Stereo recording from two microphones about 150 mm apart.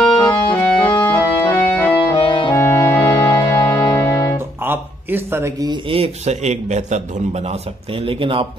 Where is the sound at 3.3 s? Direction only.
20° left (ahead or behind).